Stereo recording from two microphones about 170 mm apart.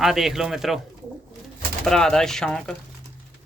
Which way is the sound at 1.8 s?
5° left (ahead or behind).